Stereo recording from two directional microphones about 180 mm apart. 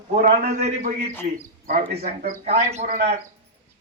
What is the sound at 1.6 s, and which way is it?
A man's voice, 55° right (ahead or behind).